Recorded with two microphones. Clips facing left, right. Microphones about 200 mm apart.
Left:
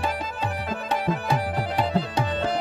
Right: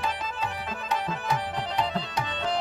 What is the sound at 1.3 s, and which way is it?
Music, 5° left (ahead or behind).